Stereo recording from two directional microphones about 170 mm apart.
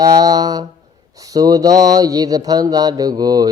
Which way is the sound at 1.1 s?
20° right (ahead or behind).